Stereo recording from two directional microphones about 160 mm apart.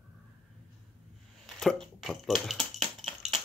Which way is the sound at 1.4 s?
5° left (ahead or behind).